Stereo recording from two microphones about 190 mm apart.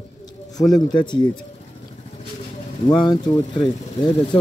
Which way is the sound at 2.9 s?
20° left (ahead or behind).